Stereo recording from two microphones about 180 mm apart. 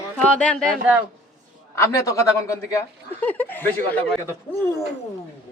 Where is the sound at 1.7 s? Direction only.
15° left (ahead or behind).